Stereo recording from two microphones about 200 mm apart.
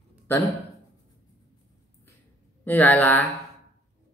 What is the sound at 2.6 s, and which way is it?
Speech, 10° left (ahead or behind).